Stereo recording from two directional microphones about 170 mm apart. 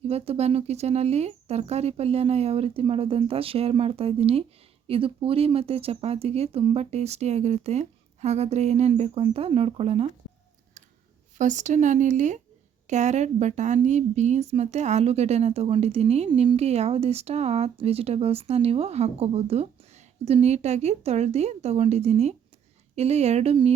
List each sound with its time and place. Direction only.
0.1 s a woman's voice: 40° right (ahead or behind)
11.3 s a woman's voice: 45° right (ahead or behind)